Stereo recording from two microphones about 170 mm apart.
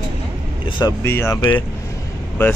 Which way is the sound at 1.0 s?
15° left (ahead or behind).